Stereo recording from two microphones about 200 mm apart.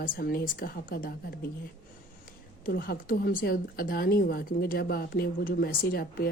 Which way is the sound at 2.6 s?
45° left (ahead or behind).